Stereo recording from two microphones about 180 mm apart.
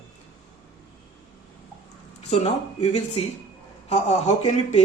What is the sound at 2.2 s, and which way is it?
Speech, 35° left (ahead or behind).